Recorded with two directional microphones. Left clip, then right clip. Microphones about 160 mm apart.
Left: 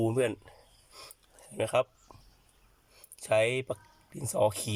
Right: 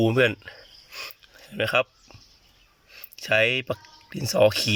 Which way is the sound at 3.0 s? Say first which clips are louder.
Right 5 dB; 5° right (ahead or behind).